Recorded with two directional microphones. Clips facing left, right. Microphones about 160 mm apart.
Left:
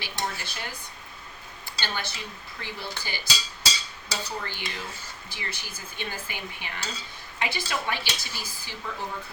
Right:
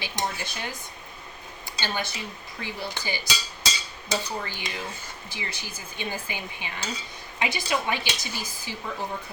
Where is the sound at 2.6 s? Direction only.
15° right (ahead or behind).